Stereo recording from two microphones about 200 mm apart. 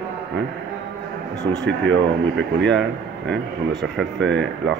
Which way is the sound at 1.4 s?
65° right (ahead or behind).